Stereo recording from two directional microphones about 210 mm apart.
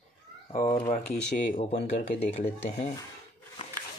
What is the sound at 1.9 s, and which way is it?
Speech, 30° left (ahead or behind).